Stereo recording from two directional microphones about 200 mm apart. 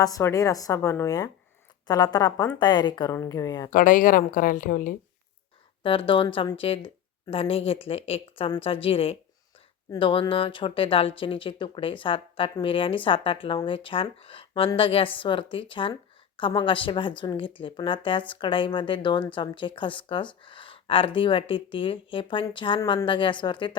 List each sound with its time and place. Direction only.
0.0 s a woman's voice: 15° left (ahead or behind)
3.7 s a woman's voice: 40° left (ahead or behind)
5.8 s a woman's voice: 25° left (ahead or behind)